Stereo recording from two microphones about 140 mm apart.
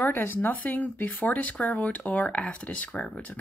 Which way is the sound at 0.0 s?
15° left (ahead or behind).